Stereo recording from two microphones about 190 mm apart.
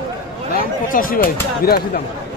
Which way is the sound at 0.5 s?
50° left (ahead or behind).